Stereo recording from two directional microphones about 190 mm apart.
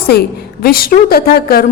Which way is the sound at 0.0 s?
55° left (ahead or behind).